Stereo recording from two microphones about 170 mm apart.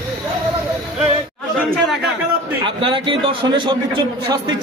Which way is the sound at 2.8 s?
30° right (ahead or behind).